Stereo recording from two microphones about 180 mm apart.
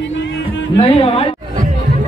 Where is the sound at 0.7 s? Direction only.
30° left (ahead or behind).